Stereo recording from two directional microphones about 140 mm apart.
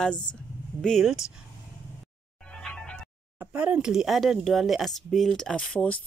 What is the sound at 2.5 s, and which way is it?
Music, 5° left (ahead or behind).